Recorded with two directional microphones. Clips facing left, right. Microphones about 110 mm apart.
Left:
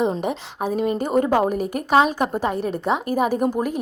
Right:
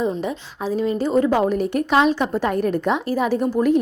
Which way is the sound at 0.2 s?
55° left (ahead or behind).